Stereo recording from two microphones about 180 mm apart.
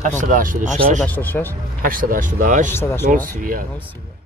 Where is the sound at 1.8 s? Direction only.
50° right (ahead or behind).